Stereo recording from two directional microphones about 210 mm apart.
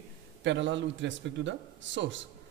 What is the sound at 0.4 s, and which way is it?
A man's voice, 60° right (ahead or behind).